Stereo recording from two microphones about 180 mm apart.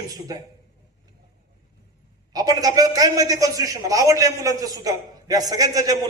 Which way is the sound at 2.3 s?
20° right (ahead or behind).